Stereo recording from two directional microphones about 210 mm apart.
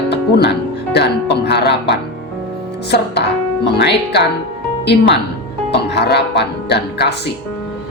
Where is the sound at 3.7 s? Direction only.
55° left (ahead or behind).